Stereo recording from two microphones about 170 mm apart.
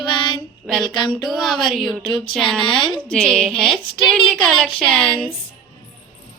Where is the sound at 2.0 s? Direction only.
30° left (ahead or behind).